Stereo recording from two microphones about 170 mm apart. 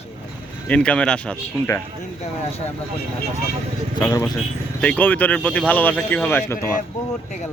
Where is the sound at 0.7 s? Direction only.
5° left (ahead or behind).